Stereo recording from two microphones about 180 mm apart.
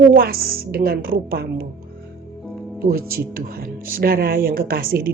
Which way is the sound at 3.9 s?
55° right (ahead or behind).